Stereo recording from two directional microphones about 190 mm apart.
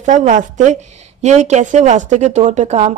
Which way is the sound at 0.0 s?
40° right (ahead or behind).